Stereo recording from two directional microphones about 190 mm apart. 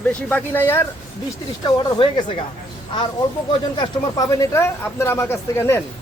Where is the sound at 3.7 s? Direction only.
20° left (ahead or behind).